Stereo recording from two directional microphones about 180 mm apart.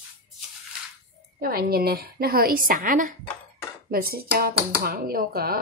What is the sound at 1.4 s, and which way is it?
Speech, 55° right (ahead or behind).